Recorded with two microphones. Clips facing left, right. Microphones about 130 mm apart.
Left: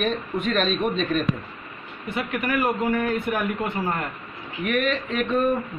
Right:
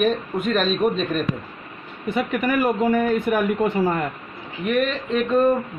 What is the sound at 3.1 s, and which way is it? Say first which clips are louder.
Speech: right 5 dB; 90° right.